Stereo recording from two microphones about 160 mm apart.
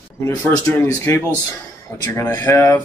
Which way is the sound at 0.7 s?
15° left (ahead or behind).